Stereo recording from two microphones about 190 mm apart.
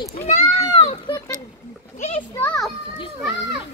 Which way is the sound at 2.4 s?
Centre (ahead or behind).